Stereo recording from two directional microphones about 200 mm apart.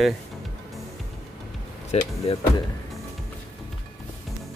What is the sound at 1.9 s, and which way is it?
Speech, 30° left (ahead or behind).